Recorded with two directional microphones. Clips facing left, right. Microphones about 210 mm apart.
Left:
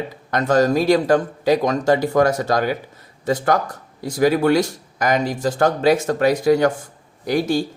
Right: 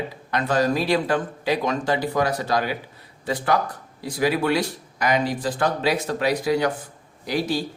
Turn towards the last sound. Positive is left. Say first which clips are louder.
# left 5 dB
turn(degrees=45)  # may be behind; listen again after turning